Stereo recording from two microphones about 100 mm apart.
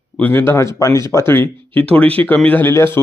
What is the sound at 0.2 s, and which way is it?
A man's voice, 20° left (ahead or behind).